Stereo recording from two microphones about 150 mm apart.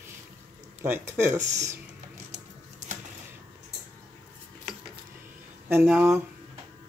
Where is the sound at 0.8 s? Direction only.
15° right (ahead or behind).